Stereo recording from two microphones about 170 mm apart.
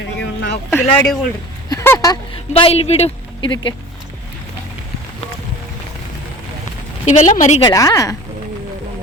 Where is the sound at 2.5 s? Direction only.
35° left (ahead or behind).